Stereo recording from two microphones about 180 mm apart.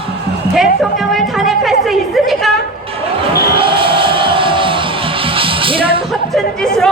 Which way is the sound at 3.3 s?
60° left (ahead or behind).